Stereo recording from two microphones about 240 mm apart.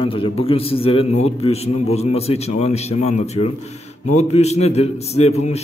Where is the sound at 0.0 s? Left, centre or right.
Left.